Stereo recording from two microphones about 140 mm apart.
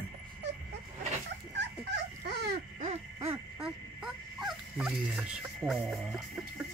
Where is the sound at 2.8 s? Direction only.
55° right (ahead or behind).